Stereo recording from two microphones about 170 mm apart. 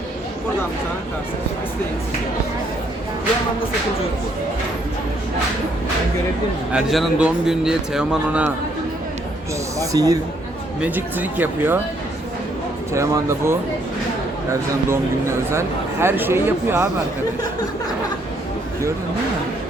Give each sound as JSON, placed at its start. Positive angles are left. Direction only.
{"t": 6.7, "sound": "a man's voice", "side_deg": -5}
{"t": 9.7, "sound": "speech", "side_deg": -20}
{"t": 10.8, "sound": "speech", "side_deg": -10}
{"t": 12.9, "sound": "speech", "side_deg": -15}
{"t": 15.5, "sound": "speech", "side_deg": -15}